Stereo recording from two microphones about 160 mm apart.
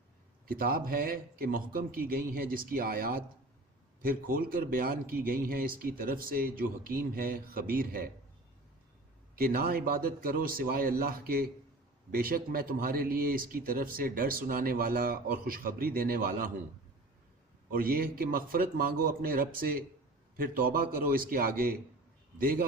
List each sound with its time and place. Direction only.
0.4 s speech: 65° right (ahead or behind)
9.3 s speech: 65° right (ahead or behind)
17.7 s speech: 65° right (ahead or behind)